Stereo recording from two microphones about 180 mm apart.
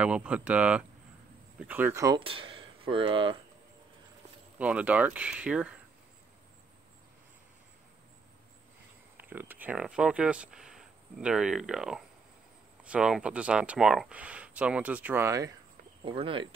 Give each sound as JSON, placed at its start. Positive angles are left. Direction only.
{"t": 0.0, "sound": "speech", "side_deg": -5}
{"t": 2.1, "sound": "speech", "side_deg": -30}
{"t": 4.6, "sound": "speech", "side_deg": -5}
{"t": 9.1, "sound": "speech", "side_deg": -10}
{"t": 16.0, "sound": "speech", "side_deg": -30}